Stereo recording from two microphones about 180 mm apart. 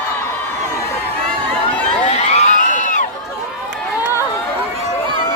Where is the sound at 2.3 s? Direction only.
40° left (ahead or behind).